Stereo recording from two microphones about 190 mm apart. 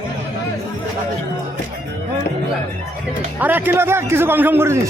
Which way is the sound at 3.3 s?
10° right (ahead or behind).